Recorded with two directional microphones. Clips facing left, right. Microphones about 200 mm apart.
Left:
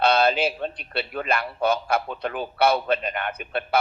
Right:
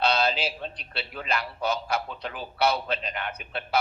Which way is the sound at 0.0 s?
55° left (ahead or behind).